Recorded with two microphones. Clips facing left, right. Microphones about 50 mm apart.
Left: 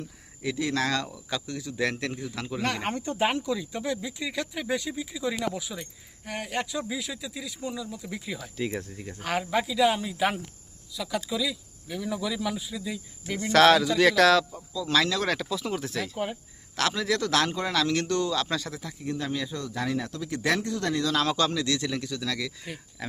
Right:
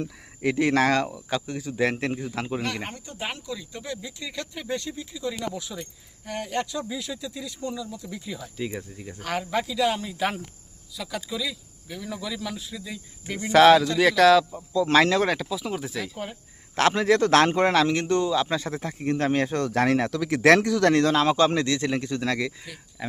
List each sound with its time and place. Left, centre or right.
0.4 s a man's voice: right; by 2.2 s centre
2.8 s speech: left
3.5 s speech: centre
13.2 s speech: centre
14.7 s a man's voice: right
15.3 s speech: centre
16.1 s speech: centre
16.7 s a man's voice: right
17.8 s speech: right
18.7 s speech: right
21.1 s speech: right
21.5 s a man's voice: right
23.0 s speech: centre